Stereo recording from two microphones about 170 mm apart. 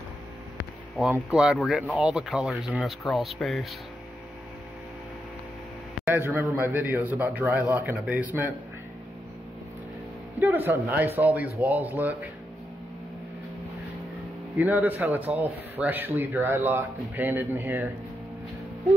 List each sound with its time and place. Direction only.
0.9 s speech: 5° right (ahead or behind)
6.0 s speech: 15° right (ahead or behind)
10.4 s speech: 10° right (ahead or behind)
14.6 s speech: 10° right (ahead or behind)